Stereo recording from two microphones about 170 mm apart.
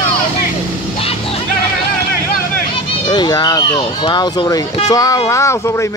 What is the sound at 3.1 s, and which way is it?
Speech, 25° left (ahead or behind).